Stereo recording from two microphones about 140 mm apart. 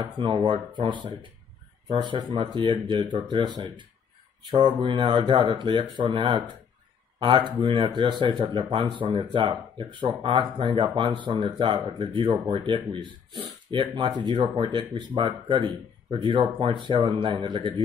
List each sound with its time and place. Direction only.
0.2 s speech: 35° right (ahead or behind)